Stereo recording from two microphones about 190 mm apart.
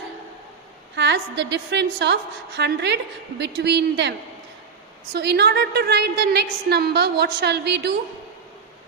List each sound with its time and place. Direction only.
0.9 s a woman's voice: 65° right (ahead or behind)
5.1 s a woman's voice: 60° right (ahead or behind)